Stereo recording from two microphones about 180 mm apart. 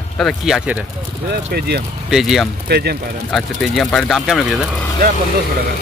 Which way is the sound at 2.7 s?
65° right (ahead or behind).